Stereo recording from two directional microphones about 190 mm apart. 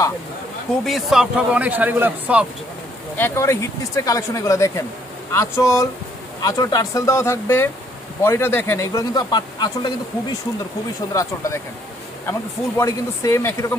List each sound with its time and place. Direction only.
0.8 s a man's voice: centre (ahead or behind)
3.2 s speech: 10° left (ahead or behind)
12.3 s speech: 15° left (ahead or behind)